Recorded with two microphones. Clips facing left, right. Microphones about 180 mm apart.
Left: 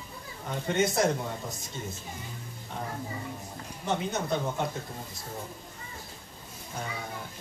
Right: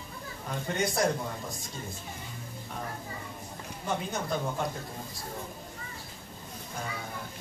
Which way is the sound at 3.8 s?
20° left (ahead or behind).